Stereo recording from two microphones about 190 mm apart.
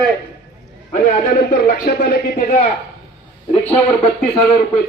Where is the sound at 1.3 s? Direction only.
50° left (ahead or behind).